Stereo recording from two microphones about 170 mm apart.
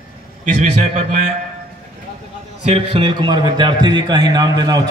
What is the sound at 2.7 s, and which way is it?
A man's voice, 30° right (ahead or behind).